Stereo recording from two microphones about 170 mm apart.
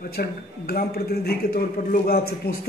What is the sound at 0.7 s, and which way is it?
A man's voice, 65° left (ahead or behind).